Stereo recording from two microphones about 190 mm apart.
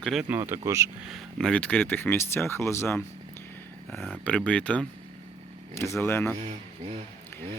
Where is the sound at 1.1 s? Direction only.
Centre (ahead or behind).